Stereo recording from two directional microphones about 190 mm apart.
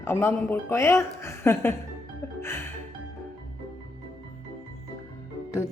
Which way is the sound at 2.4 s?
15° left (ahead or behind).